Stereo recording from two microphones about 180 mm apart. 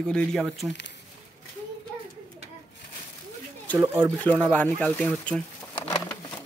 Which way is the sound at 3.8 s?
15° right (ahead or behind).